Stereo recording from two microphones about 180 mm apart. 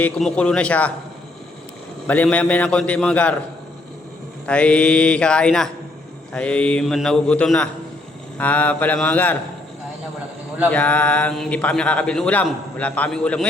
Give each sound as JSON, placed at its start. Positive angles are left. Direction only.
{"t": 0.0, "sound": "speech", "side_deg": 5}
{"t": 2.0, "sound": "speech", "side_deg": 10}
{"t": 4.4, "sound": "a man's voice", "side_deg": 5}
{"t": 10.7, "sound": "speech", "side_deg": 10}